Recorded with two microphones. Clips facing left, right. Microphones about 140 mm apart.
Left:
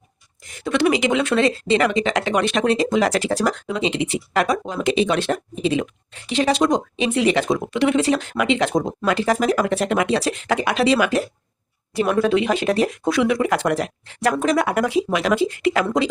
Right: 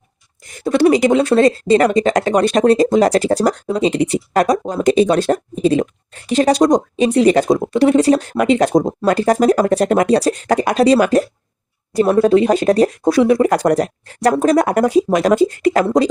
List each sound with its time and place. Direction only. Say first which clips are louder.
0.6 s speech: right 6 dB; 35° right (ahead or behind)